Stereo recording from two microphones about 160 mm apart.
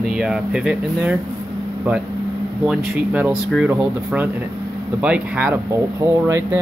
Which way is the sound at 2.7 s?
5° right (ahead or behind).